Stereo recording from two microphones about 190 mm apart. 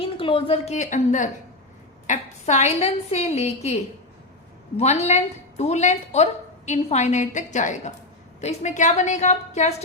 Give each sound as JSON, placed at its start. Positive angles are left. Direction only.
{"t": 0.0, "sound": "a woman's voice", "side_deg": 25}
{"t": 4.8, "sound": "a woman's voice", "side_deg": 35}